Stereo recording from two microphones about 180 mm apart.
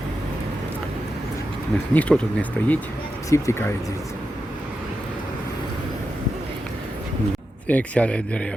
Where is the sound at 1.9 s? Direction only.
5° left (ahead or behind).